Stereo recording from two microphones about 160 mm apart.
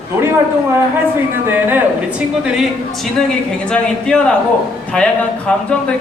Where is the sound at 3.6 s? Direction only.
5° left (ahead or behind).